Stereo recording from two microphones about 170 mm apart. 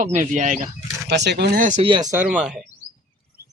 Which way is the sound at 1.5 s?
50° right (ahead or behind).